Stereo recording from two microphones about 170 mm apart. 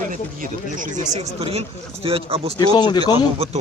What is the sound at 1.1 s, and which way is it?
Speech, 35° right (ahead or behind).